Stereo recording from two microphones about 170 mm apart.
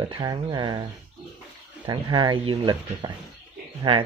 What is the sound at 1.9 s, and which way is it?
Speech, 25° right (ahead or behind).